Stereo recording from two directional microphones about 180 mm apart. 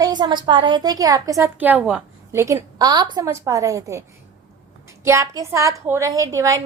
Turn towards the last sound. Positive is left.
turn(degrees=-20)  # may be behind; listen again after turning